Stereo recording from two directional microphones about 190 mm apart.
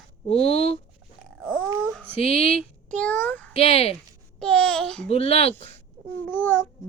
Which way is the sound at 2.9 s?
5° left (ahead or behind).